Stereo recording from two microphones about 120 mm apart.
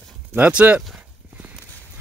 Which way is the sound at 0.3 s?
10° right (ahead or behind).